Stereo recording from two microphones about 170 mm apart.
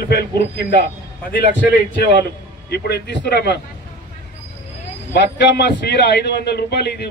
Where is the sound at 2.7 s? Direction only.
75° left (ahead or behind).